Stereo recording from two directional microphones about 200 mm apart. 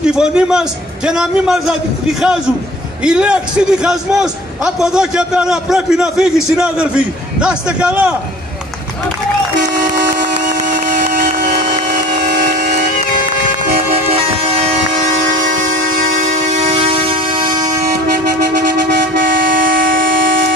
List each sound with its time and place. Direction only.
0.0 s a man's voice: 5° right (ahead or behind)
3.0 s a man's voice: 5° right (ahead or behind)
10.1 s a sound: 40° right (ahead or behind)
16.7 s a sound: 30° right (ahead or behind)
18.1 s vehicle: 55° right (ahead or behind)
19.6 s train: 45° right (ahead or behind)